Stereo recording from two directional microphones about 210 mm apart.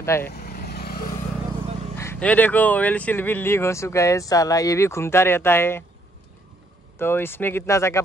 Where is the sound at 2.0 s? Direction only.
10° left (ahead or behind).